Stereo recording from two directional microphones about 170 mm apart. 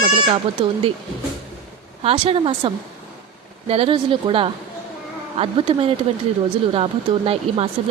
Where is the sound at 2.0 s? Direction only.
35° right (ahead or behind).